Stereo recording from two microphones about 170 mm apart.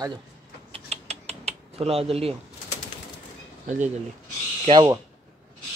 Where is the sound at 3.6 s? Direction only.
45° right (ahead or behind).